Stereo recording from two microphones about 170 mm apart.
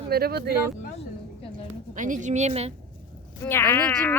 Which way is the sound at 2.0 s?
50° right (ahead or behind).